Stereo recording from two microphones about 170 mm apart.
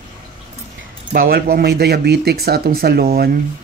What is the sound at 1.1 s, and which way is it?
Speech, 60° right (ahead or behind).